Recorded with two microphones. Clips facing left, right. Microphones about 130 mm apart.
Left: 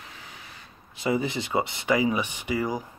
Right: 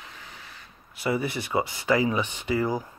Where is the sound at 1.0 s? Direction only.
20° left (ahead or behind).